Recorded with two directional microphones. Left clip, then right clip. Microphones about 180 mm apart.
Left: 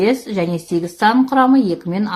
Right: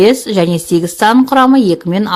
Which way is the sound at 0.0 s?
45° right (ahead or behind).